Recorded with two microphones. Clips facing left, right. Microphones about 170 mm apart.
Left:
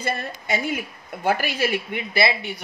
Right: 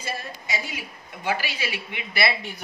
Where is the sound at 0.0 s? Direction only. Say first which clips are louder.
Left 6 dB; 60° left (ahead or behind).